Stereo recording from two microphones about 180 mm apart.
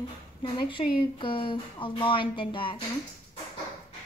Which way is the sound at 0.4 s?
25° left (ahead or behind).